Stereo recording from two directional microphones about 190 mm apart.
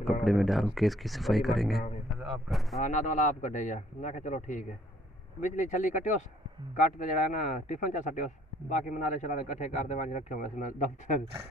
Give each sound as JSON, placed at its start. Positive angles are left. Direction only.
{"t": 0.0, "sound": "speech", "side_deg": 0}
{"t": 2.8, "sound": "speech", "side_deg": 40}